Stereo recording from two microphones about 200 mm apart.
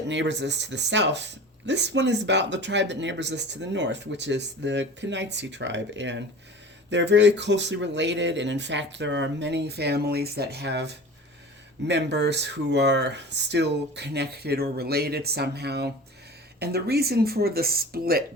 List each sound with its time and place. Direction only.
0.1 s speech: 60° right (ahead or behind)